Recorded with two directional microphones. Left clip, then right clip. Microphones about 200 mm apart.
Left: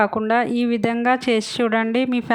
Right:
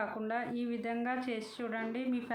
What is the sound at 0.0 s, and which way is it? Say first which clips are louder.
Speech: left 18 dB; 50° left (ahead or behind).